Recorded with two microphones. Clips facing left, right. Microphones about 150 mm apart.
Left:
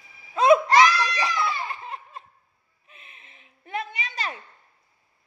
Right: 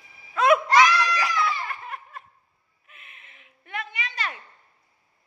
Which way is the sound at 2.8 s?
30° left (ahead or behind).